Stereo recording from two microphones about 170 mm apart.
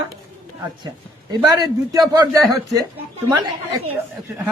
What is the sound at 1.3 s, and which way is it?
Speech, 20° right (ahead or behind).